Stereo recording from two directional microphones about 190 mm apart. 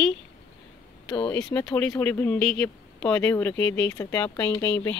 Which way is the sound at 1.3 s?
10° left (ahead or behind).